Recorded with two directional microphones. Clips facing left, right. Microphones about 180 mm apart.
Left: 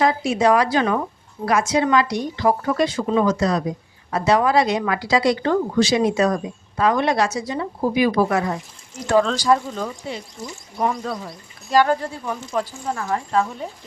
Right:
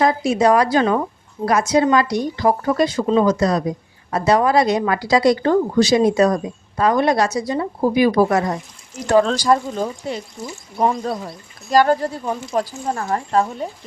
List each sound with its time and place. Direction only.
0.0 s a woman's voice: 40° right (ahead or behind)
11.7 s a woman's voice: 40° right (ahead or behind)